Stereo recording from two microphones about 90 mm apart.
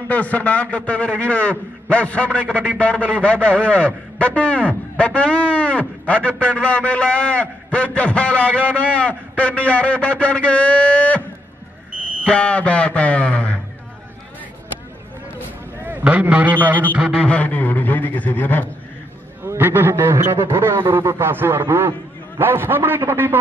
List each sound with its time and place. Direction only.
0.1 s a man's voice: 15° left (ahead or behind)
12.3 s a man's voice: 15° left (ahead or behind)
15.8 s a man's voice: 20° right (ahead or behind)
17.2 s a man's voice: 15° left (ahead or behind)
19.4 s a man's voice: 25° right (ahead or behind)